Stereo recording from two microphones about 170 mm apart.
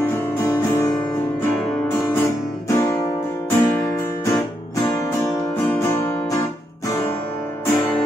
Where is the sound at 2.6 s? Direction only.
15° left (ahead or behind).